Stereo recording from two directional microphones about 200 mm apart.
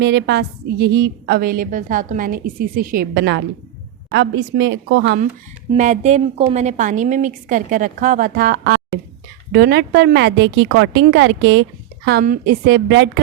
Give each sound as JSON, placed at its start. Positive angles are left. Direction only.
{"t": 0.0, "sound": "a woman's voice", "side_deg": -55}
{"t": 5.7, "sound": "a woman's voice", "side_deg": -35}
{"t": 12.6, "sound": "a woman's voice", "side_deg": -60}